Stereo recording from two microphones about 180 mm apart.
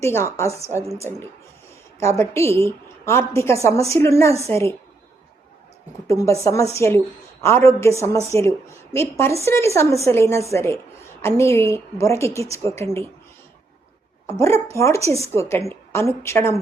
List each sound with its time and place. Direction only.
0.0 s a woman's voice: 15° left (ahead or behind)
2.0 s a woman's voice: 15° left (ahead or behind)
6.1 s a woman's voice: 15° left (ahead or behind)
14.7 s a woman's voice: 15° left (ahead or behind)